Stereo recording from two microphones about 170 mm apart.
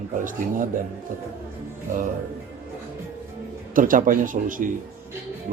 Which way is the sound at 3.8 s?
50° right (ahead or behind).